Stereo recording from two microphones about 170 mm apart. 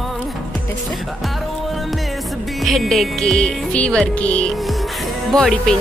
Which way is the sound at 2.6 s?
Centre (ahead or behind).